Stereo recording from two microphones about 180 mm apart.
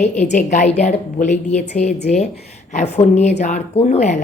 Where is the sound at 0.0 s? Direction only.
40° left (ahead or behind).